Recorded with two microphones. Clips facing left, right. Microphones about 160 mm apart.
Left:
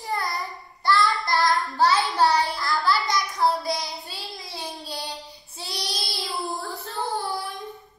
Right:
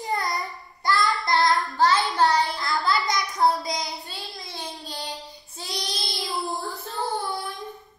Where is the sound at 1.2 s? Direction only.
20° right (ahead or behind).